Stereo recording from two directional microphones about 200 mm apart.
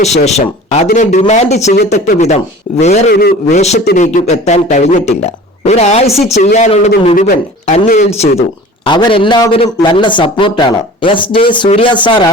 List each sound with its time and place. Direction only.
0.3 s speech: 35° left (ahead or behind)
1.7 s speech: 55° left (ahead or behind)
2.1 s speech: 35° left (ahead or behind)
3.1 s speech: 50° left (ahead or behind)
3.5 s speech: 35° left (ahead or behind)
6.1 s speech: centre (ahead or behind)
6.3 s speech: 35° left (ahead or behind)
7.3 s speech: 40° left (ahead or behind); by 12.3 s 25° left (ahead or behind)